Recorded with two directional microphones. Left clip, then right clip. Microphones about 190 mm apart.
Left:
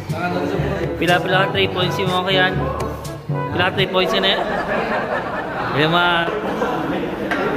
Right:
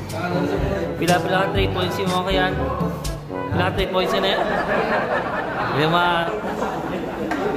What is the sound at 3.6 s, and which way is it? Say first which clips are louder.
Speech: left 4 dB; 15° right (ahead or behind).